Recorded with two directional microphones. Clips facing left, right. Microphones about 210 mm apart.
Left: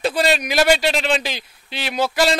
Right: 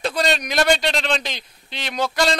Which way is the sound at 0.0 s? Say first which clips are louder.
Left 3 dB; 5° left (ahead or behind).